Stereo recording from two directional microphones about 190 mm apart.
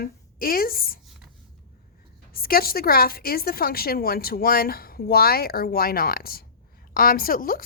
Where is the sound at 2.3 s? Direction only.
50° left (ahead or behind).